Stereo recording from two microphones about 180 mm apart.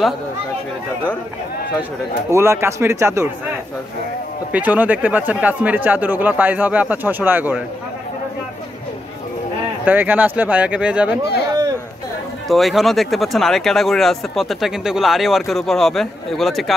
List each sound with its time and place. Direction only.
2.3 s speech: 15° right (ahead or behind)
9.8 s speech: 10° right (ahead or behind)
12.4 s speech: centre (ahead or behind)